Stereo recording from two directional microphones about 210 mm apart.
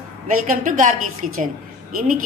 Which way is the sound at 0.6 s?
40° right (ahead or behind).